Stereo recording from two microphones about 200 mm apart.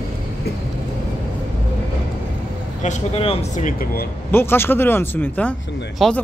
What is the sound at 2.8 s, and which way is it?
Speech, 35° left (ahead or behind).